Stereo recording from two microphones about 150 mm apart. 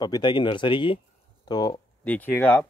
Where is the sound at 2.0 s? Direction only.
10° left (ahead or behind).